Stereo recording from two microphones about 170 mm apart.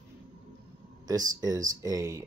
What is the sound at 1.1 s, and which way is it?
Speech, 20° right (ahead or behind).